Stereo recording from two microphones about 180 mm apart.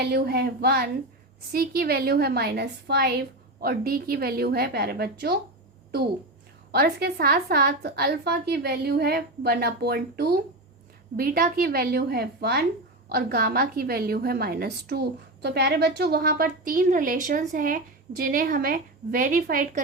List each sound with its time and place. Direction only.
0.0 s a woman's voice: 65° right (ahead or behind)
6.7 s a woman's voice: 60° right (ahead or behind)